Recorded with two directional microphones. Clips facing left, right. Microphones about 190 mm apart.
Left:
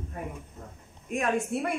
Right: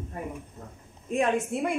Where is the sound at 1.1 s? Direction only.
25° right (ahead or behind).